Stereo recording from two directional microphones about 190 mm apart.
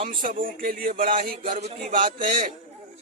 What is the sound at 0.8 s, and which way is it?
Speech, 30° right (ahead or behind).